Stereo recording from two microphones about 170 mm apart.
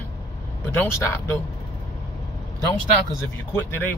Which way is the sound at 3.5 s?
15° left (ahead or behind).